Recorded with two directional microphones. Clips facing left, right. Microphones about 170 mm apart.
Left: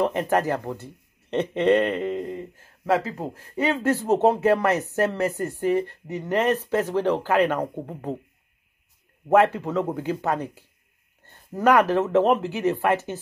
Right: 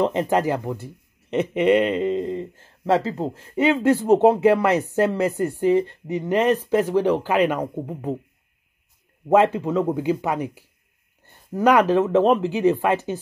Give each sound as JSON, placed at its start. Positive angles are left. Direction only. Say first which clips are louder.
{"t": 0.0, "sound": "speech", "louder": "right 2 dB", "side_deg": -20}
{"t": 9.3, "sound": "speech", "louder": "right 2 dB", "side_deg": -15}